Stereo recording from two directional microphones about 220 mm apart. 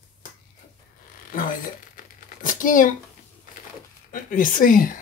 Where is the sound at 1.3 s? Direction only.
40° left (ahead or behind).